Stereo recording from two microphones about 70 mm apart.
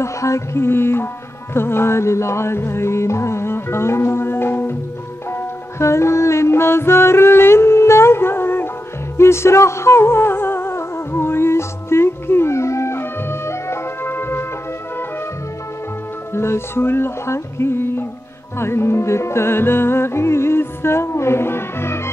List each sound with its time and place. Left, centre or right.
0.0 s music: left
16.3 s music: left